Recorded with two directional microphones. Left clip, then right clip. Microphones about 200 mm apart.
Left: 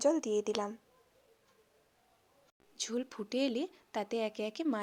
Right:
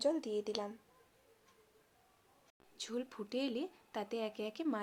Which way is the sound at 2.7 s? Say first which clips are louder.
Left 4 dB; 35° left (ahead or behind).